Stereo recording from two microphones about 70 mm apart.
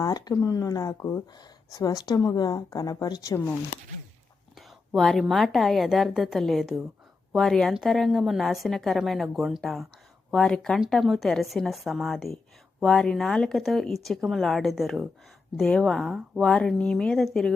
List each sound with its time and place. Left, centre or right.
0.0 s a woman's voice: left
1.3 s speech: left
1.8 s a woman's voice: left
4.9 s a woman's voice: centre
16.4 s a woman's voice: centre